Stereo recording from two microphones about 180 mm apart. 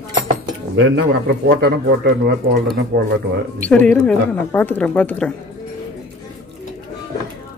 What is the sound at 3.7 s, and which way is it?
A woman's voice, 5° left (ahead or behind).